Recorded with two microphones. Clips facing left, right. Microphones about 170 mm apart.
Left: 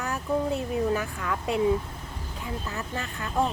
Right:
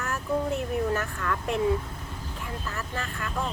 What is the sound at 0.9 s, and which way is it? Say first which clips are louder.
Speech: even; 10° left (ahead or behind).